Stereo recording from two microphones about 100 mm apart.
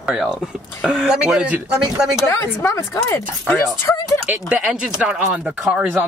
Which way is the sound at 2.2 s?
30° left (ahead or behind).